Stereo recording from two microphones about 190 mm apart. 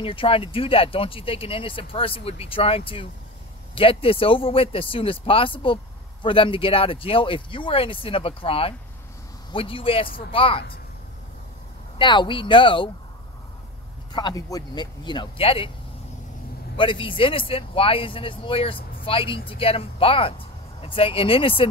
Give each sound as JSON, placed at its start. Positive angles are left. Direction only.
{"t": 0.0, "sound": "speech", "side_deg": 30}
{"t": 12.0, "sound": "speech", "side_deg": 25}
{"t": 14.1, "sound": "speech", "side_deg": 20}
{"t": 16.7, "sound": "speech", "side_deg": 25}